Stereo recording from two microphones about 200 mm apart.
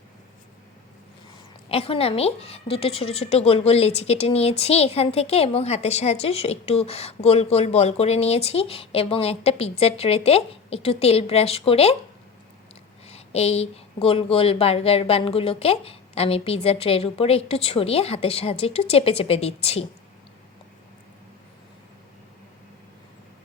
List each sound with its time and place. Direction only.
1.7 s a woman's voice: 30° left (ahead or behind)
13.1 s speech: 30° left (ahead or behind)